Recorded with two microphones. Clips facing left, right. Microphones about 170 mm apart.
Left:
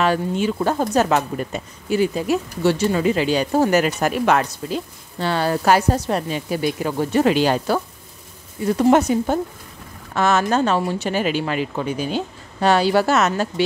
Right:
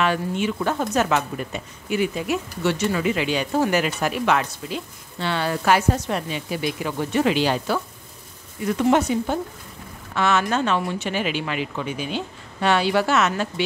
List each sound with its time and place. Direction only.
0.0 s speech: 35° left (ahead or behind)